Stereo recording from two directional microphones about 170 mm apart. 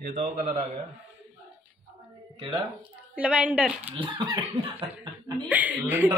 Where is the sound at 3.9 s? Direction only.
30° right (ahead or behind).